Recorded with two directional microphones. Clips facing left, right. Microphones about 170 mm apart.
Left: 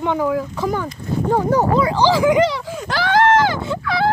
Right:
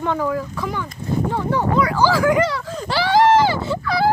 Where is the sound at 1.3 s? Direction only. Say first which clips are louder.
Left 9 dB; 40° left (ahead or behind).